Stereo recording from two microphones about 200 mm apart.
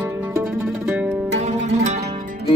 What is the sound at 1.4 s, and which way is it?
Zither, 35° right (ahead or behind).